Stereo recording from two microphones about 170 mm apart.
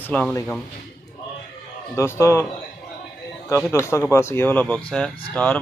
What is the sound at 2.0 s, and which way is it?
Speech, 15° left (ahead or behind).